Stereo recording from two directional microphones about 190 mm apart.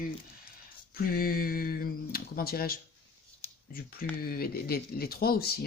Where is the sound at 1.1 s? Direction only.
50° left (ahead or behind).